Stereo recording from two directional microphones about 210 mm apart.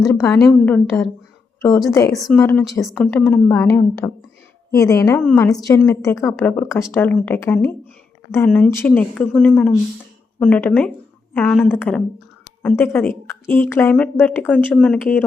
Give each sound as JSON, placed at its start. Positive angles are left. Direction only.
{"t": 0.0, "sound": "speech", "side_deg": 10}
{"t": 2.1, "sound": "speech", "side_deg": 0}